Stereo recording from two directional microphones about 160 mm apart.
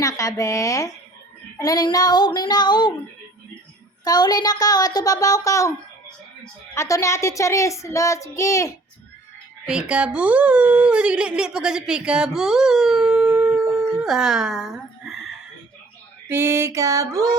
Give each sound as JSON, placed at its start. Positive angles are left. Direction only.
{"t": 0.0, "sound": "child singing", "side_deg": 20}
{"t": 4.0, "sound": "child singing", "side_deg": 25}
{"t": 6.7, "sound": "child singing", "side_deg": 20}
{"t": 9.6, "sound": "speech", "side_deg": -5}
{"t": 16.3, "sound": "mantra", "side_deg": -15}